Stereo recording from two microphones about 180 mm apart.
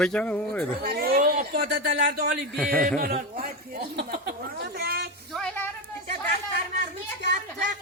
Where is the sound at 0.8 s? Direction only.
60° right (ahead or behind).